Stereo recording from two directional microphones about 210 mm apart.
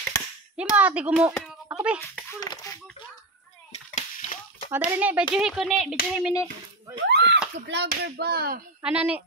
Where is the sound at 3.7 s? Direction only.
30° left (ahead or behind).